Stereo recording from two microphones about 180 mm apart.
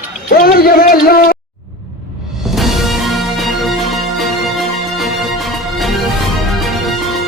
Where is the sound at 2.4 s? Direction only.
Centre (ahead or behind).